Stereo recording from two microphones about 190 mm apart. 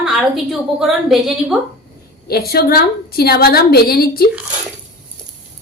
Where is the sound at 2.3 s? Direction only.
55° left (ahead or behind).